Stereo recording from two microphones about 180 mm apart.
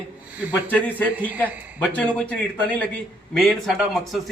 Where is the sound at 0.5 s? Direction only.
10° left (ahead or behind).